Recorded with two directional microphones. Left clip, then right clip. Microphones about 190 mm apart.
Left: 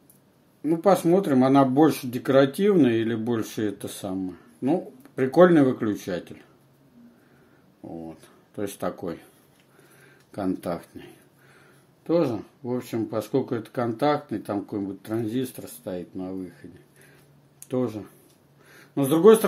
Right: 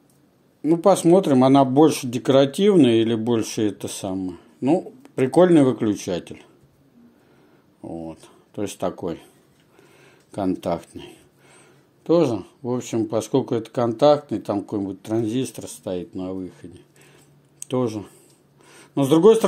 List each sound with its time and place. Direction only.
0.6 s speech: 35° right (ahead or behind)
7.8 s speech: 30° right (ahead or behind)
10.3 s speech: 30° right (ahead or behind)
17.6 s a man's voice: 35° right (ahead or behind)